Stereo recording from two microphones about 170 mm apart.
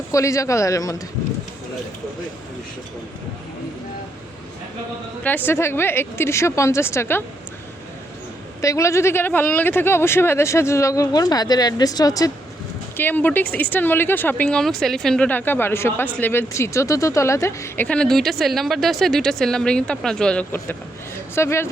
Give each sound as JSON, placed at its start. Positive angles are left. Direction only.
{"t": 0.1, "sound": "speech", "side_deg": 20}
{"t": 5.2, "sound": "speech", "side_deg": 10}
{"t": 8.6, "sound": "speech", "side_deg": 20}